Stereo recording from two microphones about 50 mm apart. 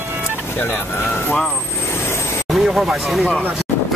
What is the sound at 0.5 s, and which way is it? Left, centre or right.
Speech, left.